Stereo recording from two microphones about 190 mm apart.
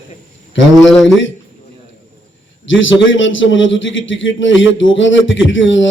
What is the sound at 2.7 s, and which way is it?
A man's voice, 85° left.